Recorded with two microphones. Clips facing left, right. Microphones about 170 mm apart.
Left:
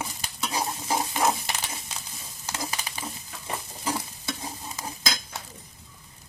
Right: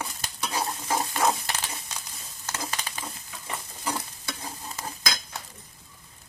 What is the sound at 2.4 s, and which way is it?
Frying, 10° left (ahead or behind).